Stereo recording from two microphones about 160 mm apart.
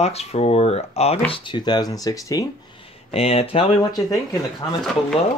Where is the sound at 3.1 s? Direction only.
40° left (ahead or behind).